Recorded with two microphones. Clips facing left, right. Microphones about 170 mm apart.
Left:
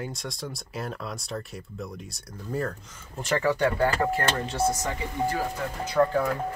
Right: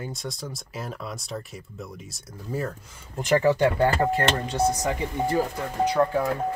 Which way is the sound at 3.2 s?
20° right (ahead or behind).